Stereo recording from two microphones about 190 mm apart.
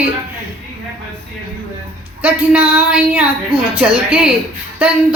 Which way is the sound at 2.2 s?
10° right (ahead or behind).